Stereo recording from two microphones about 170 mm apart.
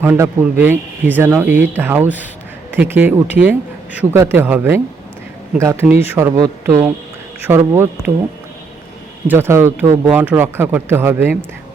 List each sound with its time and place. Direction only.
0.0 s speech: 15° right (ahead or behind)
9.2 s speech: 10° right (ahead or behind)